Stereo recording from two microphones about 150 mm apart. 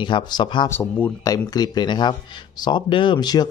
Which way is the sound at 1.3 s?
25° left (ahead or behind).